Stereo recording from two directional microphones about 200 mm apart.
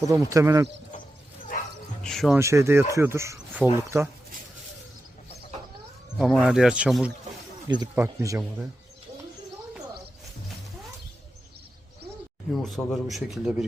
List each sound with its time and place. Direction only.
0.0 s speech: 15° right (ahead or behind)
1.5 s bow-wow: 45° left (ahead or behind)
2.0 s a man's voice: centre (ahead or behind)
2.4 s speech: 15° right (ahead or behind)
6.1 s a man's voice: centre (ahead or behind)
12.6 s a man's voice: centre (ahead or behind)